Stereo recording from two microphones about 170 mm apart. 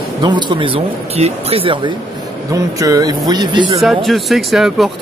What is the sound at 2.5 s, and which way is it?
Speech, 20° right (ahead or behind).